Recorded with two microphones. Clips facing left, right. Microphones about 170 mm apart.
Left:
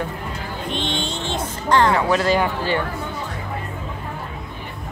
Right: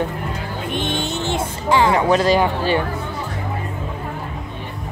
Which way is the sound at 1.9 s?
20° right (ahead or behind).